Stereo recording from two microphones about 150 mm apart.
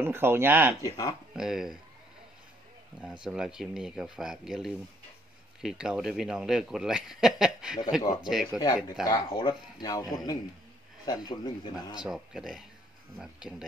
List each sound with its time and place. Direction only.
0.0 s speech: 15° right (ahead or behind)
0.8 s speech: 25° left (ahead or behind)
1.3 s a man's voice: 5° right (ahead or behind)
3.3 s a man's voice: 5° right (ahead or behind)
8.5 s speech: 25° left (ahead or behind)
12.0 s a man's voice: 5° right (ahead or behind)